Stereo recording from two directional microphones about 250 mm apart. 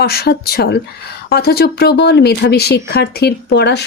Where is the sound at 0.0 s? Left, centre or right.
Left.